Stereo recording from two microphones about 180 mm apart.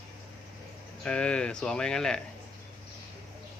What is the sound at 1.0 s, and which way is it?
Speech, 5° left (ahead or behind).